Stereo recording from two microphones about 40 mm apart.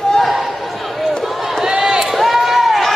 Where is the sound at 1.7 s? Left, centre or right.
Centre.